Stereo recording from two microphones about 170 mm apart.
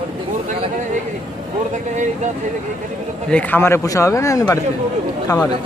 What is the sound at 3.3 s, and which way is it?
A man's voice, 10° left (ahead or behind).